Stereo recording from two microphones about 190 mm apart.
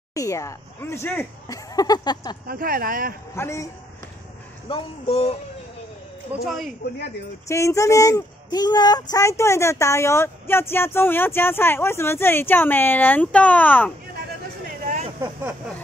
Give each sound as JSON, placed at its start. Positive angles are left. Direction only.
{"t": 0.1, "sound": "speech", "side_deg": 15}
{"t": 2.4, "sound": "speech", "side_deg": -50}
{"t": 3.3, "sound": "speech", "side_deg": 15}
{"t": 4.6, "sound": "speech", "side_deg": 30}
{"t": 6.4, "sound": "a man's voice", "side_deg": 0}
{"t": 7.4, "sound": "speech", "side_deg": 15}